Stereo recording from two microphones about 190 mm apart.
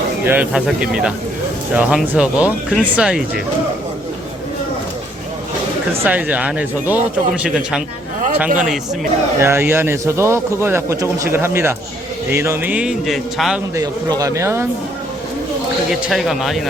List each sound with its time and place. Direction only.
0.3 s speech: 5° right (ahead or behind)
6.1 s a man's voice: 10° right (ahead or behind)
9.4 s a man's voice: 15° right (ahead or behind)
13.7 s a man's voice: 15° right (ahead or behind)
15.9 s speech: centre (ahead or behind)